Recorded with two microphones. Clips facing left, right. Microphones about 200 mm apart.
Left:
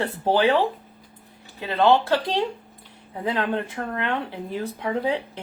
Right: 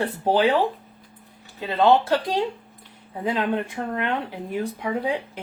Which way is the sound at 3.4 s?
15° right (ahead or behind).